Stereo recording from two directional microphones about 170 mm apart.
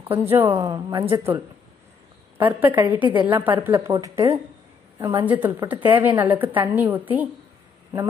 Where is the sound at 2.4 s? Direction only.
10° right (ahead or behind).